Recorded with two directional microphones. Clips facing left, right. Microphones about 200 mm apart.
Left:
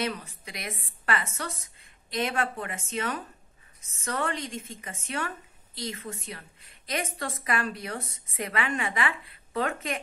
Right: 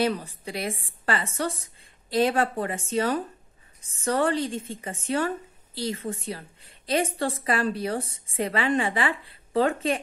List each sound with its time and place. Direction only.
0.0 s a woman's voice: 35° right (ahead or behind)